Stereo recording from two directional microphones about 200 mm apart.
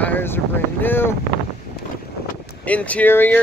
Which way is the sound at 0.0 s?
10° left (ahead or behind).